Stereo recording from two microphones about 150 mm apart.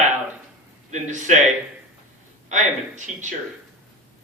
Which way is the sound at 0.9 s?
55° right (ahead or behind).